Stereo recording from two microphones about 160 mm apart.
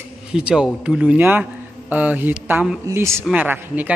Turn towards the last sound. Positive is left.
turn(degrees=-10)  # may be behind; listen again after turning